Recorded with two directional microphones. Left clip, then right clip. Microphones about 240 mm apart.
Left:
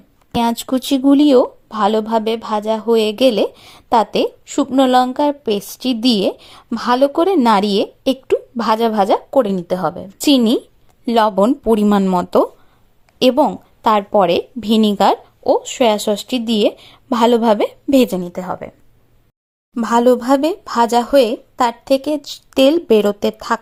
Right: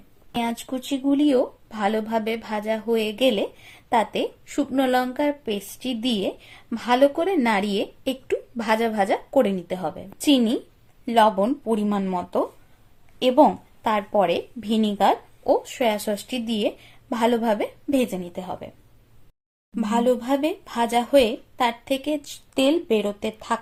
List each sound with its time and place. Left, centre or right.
0.3 s speech: left
19.7 s speech: left